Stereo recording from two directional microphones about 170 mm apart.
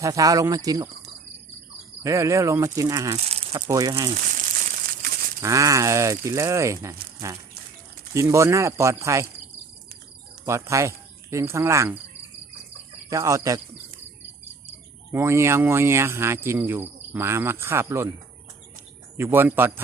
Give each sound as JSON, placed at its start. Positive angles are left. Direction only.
{"t": 0.0, "sound": "speech", "side_deg": -20}
{"t": 2.0, "sound": "speech", "side_deg": -20}
{"t": 5.4, "sound": "speech", "side_deg": -20}
{"t": 10.4, "sound": "cricket", "side_deg": -15}
{"t": 13.1, "sound": "speech", "side_deg": -20}
{"t": 15.1, "sound": "speech", "side_deg": -15}
{"t": 19.1, "sound": "speech", "side_deg": -15}